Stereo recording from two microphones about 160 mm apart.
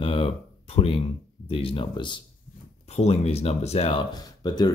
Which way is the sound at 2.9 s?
40° left (ahead or behind).